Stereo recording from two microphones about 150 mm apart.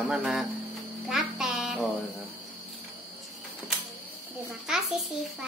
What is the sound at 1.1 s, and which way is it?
Child singing, 5° right (ahead or behind).